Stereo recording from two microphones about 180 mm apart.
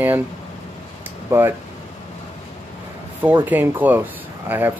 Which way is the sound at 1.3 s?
15° right (ahead or behind).